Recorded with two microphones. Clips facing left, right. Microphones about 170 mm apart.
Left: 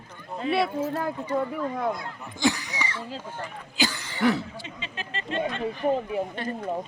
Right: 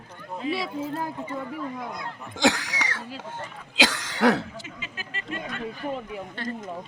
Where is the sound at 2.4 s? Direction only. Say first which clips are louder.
Right 2 dB; 90° right.